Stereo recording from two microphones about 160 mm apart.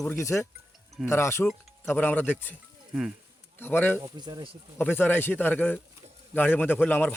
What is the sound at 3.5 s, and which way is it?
Speech, 15° left (ahead or behind).